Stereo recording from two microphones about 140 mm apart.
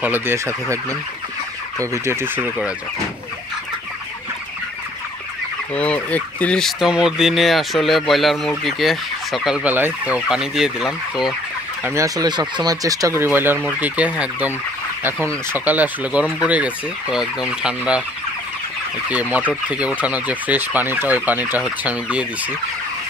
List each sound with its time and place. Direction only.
0.0 s fowl: 15° right (ahead or behind)
1.8 s fowl: 20° right (ahead or behind)
5.8 s speech: 10° left (ahead or behind)
11.8 s speech: 20° right (ahead or behind)
13.7 s fowl: 10° right (ahead or behind)
15.5 s fowl: 10° right (ahead or behind)
19.3 s fowl: 10° right (ahead or behind)